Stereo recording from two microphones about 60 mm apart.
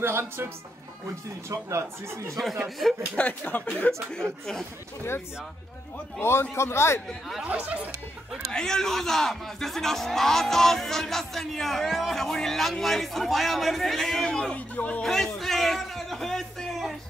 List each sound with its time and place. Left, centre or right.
0.0 s speech: right
1.5 s speech: right
2.6 s a man's voice: centre
3.2 s speech: left
4.1 s speech: centre
6.1 s a man's voice: left
7.5 s speech: right
8.5 s a man's voice: centre
15.3 s speech: centre